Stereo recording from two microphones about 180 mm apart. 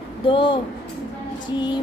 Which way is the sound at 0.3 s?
30° left (ahead or behind).